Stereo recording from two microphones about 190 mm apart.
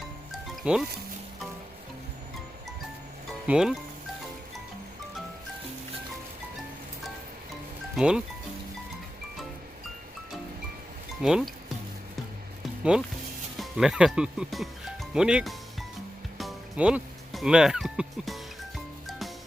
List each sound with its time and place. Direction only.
0.3 s music: centre (ahead or behind)
3.4 s speech: 5° right (ahead or behind)
7.9 s speech: 5° right (ahead or behind)
11.2 s speech: 5° right (ahead or behind)
12.9 s speech: 5° right (ahead or behind)
16.4 s music: 5° right (ahead or behind)